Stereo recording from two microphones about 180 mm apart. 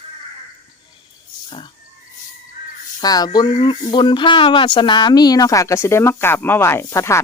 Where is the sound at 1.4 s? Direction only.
30° left (ahead or behind).